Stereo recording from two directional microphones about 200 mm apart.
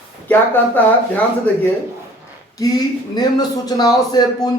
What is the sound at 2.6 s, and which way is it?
A man's voice, 20° left (ahead or behind).